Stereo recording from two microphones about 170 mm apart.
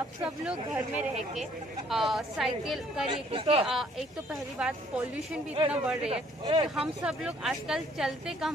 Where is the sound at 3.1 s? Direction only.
35° right (ahead or behind).